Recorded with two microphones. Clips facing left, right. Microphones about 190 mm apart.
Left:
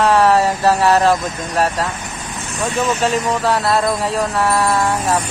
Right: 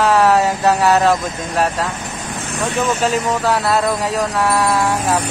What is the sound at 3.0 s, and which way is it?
Speech, centre (ahead or behind).